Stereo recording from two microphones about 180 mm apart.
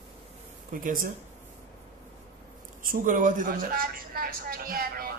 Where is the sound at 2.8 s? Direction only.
50° right (ahead or behind).